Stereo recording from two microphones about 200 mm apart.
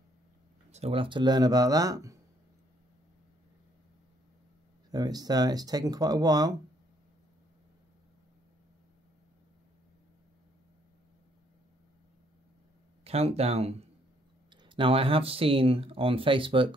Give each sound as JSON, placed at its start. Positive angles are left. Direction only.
{"t": 0.7, "sound": "speech", "side_deg": -30}
{"t": 4.9, "sound": "speech", "side_deg": -20}
{"t": 13.0, "sound": "speech", "side_deg": -30}